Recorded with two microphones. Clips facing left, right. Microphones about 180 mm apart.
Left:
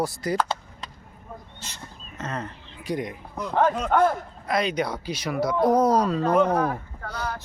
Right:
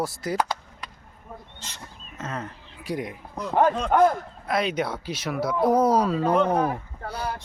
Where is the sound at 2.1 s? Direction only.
5° right (ahead or behind).